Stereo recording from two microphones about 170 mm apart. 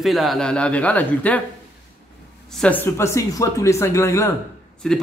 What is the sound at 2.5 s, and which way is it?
Speech, 10° left (ahead or behind).